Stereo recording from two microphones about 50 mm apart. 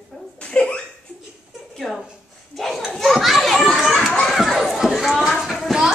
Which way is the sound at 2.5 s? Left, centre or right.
Centre.